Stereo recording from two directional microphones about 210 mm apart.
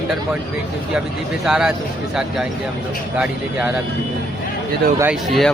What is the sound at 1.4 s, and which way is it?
Speech, 5° right (ahead or behind).